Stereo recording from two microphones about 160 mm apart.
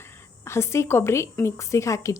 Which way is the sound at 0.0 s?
15° left (ahead or behind).